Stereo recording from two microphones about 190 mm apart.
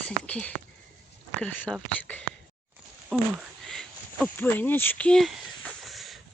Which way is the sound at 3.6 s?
5° left (ahead or behind).